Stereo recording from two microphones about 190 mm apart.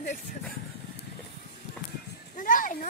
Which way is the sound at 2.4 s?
45° left (ahead or behind).